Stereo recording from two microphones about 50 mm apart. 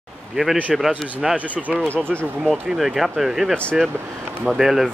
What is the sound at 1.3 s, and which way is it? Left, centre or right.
Speech, right.